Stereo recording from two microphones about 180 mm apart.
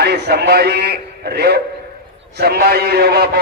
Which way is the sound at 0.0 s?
65° right (ahead or behind).